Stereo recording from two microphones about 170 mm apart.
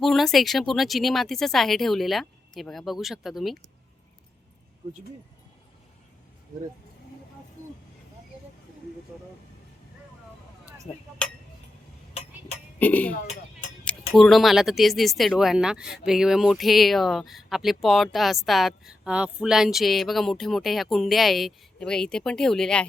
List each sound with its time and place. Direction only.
0.0 s speech: centre (ahead or behind)
12.8 s speech: 10° left (ahead or behind)
13.2 s a sound: 45° left (ahead or behind)
14.1 s speech: centre (ahead or behind)